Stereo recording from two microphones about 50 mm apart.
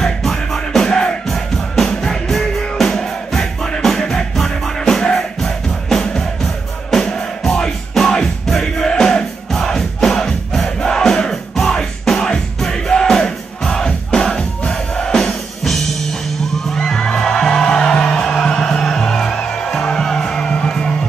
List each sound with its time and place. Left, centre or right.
0.0 s music: centre
10.8 s crowd: centre
11.5 s music: centre
16.7 s music: centre